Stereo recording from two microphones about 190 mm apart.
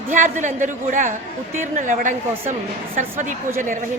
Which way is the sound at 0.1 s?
40° right (ahead or behind).